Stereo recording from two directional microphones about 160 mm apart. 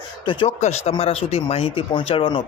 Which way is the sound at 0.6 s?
40° left (ahead or behind).